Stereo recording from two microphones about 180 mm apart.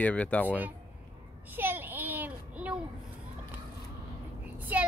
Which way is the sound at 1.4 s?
10° right (ahead or behind).